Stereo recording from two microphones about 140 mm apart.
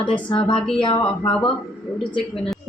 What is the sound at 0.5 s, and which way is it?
Speech, 5° left (ahead or behind).